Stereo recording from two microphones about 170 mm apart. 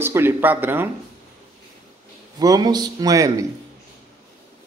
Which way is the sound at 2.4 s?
20° right (ahead or behind).